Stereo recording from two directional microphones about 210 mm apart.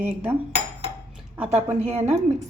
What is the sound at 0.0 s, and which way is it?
Speech, 10° right (ahead or behind).